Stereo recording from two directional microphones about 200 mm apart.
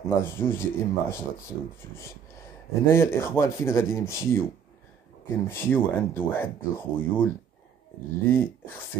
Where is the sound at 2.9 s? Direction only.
15° left (ahead or behind).